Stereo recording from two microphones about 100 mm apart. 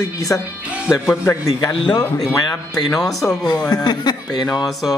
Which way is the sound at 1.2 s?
35° left (ahead or behind).